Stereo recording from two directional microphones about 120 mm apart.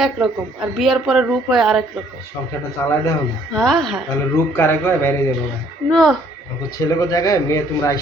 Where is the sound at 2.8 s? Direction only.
20° left (ahead or behind).